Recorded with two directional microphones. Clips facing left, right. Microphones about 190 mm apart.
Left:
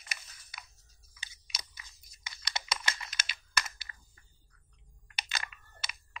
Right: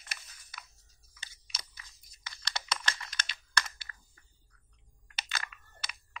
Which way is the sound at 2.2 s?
10° left (ahead or behind).